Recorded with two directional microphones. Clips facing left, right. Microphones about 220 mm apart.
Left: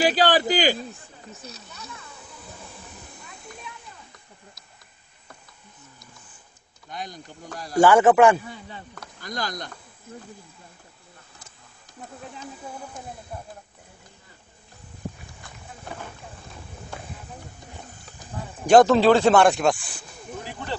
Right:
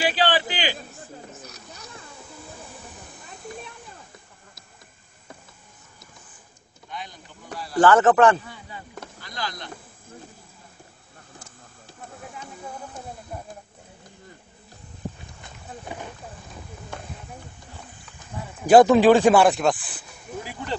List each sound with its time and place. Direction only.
0.0 s a man's voice: 40° left (ahead or behind)
6.9 s a man's voice: 45° left (ahead or behind)
7.7 s speech: 10° left (ahead or behind)
9.2 s a man's voice: 45° left (ahead or behind)
15.9 s a sound: 15° right (ahead or behind)
18.7 s speech: 10° right (ahead or behind)
19.4 s speech: centre (ahead or behind)